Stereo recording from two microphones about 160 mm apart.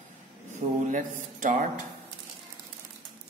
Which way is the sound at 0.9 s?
55° right (ahead or behind).